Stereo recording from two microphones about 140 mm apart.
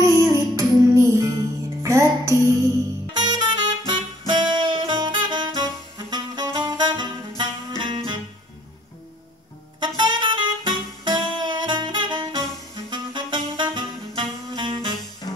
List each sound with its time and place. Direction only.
0.0 s music: 20° right (ahead or behind)
3.1 s saxophone: 30° right (ahead or behind)
7.8 s music: 35° right (ahead or behind)
9.8 s saxophone: 30° right (ahead or behind)